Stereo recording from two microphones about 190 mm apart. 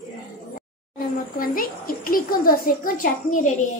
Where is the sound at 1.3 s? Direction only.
50° left (ahead or behind).